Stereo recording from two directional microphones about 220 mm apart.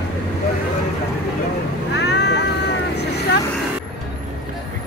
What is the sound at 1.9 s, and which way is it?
Vehicle, 50° left (ahead or behind).